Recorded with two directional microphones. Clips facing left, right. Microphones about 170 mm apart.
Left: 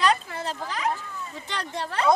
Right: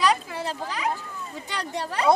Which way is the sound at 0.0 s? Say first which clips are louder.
Even; 10° right (ahead or behind).